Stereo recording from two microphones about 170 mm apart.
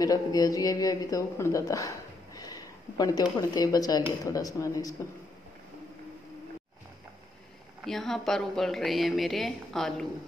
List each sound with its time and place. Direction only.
0.0 s a man's voice: 20° left (ahead or behind)
7.8 s a woman's voice: centre (ahead or behind)